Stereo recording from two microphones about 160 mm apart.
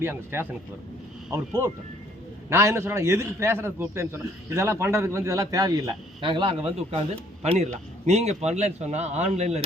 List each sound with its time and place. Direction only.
0.0 s a man's voice: 15° right (ahead or behind); by 9.6 s 40° right (ahead or behind)